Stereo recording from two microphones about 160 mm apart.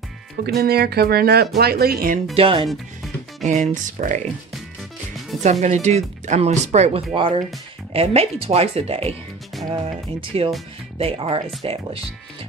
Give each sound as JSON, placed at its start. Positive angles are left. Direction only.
{"t": 0.6, "sound": "speech", "side_deg": -80}
{"t": 2.3, "sound": "speech", "side_deg": -35}
{"t": 3.4, "sound": "speech", "side_deg": -50}
{"t": 5.4, "sound": "speech", "side_deg": -45}
{"t": 7.2, "sound": "speech", "side_deg": -30}